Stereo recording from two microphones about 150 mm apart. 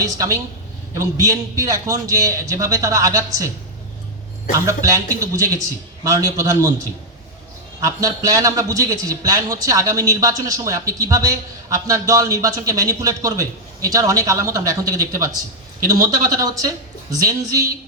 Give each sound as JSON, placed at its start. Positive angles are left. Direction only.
{"t": 0.0, "sound": "a man's voice", "side_deg": -20}
{"t": 4.6, "sound": "a man's voice", "side_deg": -20}
{"t": 7.8, "sound": "a man's voice", "side_deg": -25}